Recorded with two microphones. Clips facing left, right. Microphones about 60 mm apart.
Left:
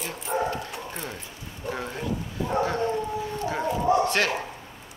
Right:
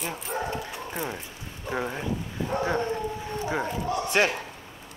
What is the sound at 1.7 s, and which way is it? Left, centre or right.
Speech, centre.